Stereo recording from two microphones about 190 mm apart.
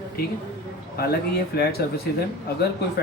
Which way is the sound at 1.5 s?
55° left (ahead or behind).